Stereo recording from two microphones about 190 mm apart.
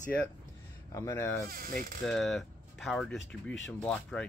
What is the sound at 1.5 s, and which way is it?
Speech, 50° right (ahead or behind).